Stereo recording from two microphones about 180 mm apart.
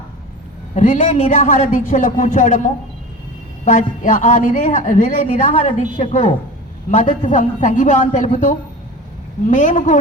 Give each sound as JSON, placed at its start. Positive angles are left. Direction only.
{"t": 0.8, "sound": "a woman's voice", "side_deg": 40}
{"t": 3.7, "sound": "a woman's voice", "side_deg": 45}
{"t": 6.0, "sound": "a woman's voice", "side_deg": 35}
{"t": 6.9, "sound": "a woman's voice", "side_deg": 45}